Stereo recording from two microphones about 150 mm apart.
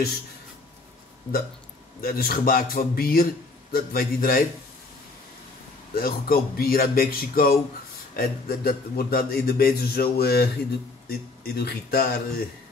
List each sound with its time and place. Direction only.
2.0 s a man's voice: 80° left
5.9 s speech: 80° left